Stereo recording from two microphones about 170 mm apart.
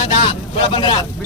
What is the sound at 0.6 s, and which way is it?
Speech, 25° left (ahead or behind).